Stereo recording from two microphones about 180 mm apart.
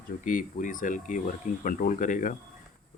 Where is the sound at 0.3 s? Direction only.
50° left (ahead or behind).